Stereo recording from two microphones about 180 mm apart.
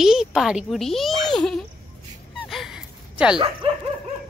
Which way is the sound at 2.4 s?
Centre (ahead or behind).